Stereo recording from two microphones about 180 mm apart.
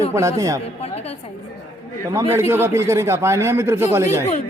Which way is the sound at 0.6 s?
35° left (ahead or behind).